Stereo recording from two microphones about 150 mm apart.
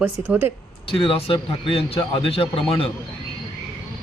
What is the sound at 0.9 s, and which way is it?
Speech, 35° left (ahead or behind).